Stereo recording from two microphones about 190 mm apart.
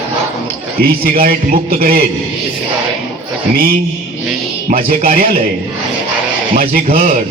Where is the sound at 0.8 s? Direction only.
50° right (ahead or behind).